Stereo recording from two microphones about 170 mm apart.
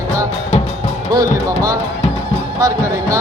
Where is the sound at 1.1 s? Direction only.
20° right (ahead or behind).